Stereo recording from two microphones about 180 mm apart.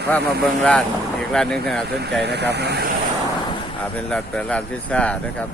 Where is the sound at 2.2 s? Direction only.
70° right (ahead or behind).